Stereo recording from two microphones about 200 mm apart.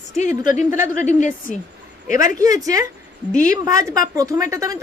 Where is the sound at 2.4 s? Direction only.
15° right (ahead or behind).